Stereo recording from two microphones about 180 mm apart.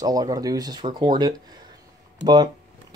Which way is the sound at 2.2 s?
25° right (ahead or behind).